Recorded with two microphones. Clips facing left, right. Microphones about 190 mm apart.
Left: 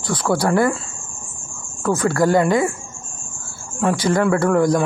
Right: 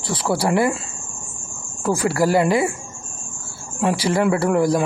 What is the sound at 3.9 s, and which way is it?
Speech, 30° right (ahead or behind).